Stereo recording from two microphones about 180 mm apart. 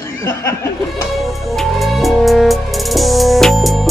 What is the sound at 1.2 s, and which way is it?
Music, centre (ahead or behind).